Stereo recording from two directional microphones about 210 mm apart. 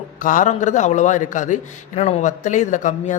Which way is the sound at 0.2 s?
40° left (ahead or behind).